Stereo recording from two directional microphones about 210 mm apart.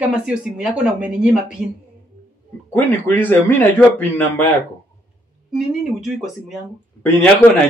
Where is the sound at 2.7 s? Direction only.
10° left (ahead or behind).